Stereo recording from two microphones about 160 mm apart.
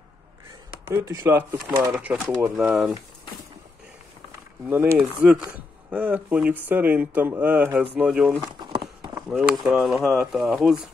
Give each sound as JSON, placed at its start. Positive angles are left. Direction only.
{"t": 0.8, "sound": "speech", "side_deg": -15}
{"t": 4.9, "sound": "speech", "side_deg": -10}
{"t": 8.5, "sound": "a sound", "side_deg": -30}
{"t": 9.3, "sound": "speech", "side_deg": 0}